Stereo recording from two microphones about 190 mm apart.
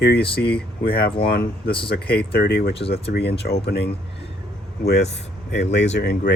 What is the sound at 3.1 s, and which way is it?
Speech, 55° left (ahead or behind).